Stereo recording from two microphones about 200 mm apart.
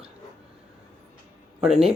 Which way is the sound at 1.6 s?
5° right (ahead or behind).